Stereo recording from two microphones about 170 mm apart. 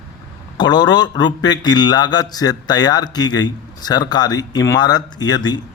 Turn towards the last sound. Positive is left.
turn(degrees=25)  # may be behind; listen again after turning